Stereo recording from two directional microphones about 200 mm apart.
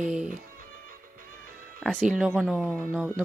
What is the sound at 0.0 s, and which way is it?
Music, 40° right (ahead or behind).